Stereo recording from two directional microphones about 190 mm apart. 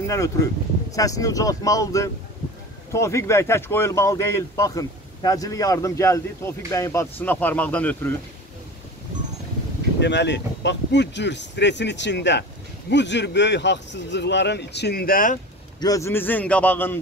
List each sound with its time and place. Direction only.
0.0 s speech: 15° left (ahead or behind)
9.9 s speech: 65° left (ahead or behind); by 15.3 s 50° left (ahead or behind)
15.8 s speech: 15° left (ahead or behind)